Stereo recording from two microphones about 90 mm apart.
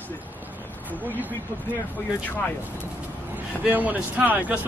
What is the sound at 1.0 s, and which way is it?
Speech, 20° right (ahead or behind).